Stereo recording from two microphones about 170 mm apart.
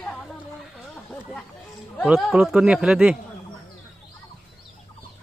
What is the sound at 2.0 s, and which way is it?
Speech, centre (ahead or behind).